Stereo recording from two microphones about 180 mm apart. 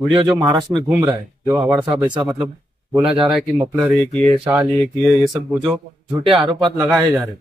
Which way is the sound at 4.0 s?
5° left (ahead or behind).